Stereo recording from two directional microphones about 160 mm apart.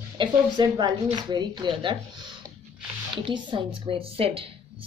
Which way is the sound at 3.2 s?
30° right (ahead or behind).